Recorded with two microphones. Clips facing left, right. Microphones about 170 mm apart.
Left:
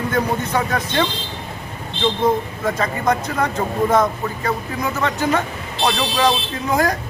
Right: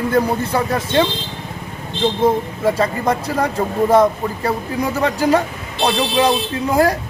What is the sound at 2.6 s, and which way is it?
Speech, 30° right (ahead or behind).